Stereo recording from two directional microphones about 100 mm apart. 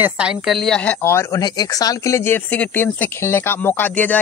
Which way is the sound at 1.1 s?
30° left (ahead or behind).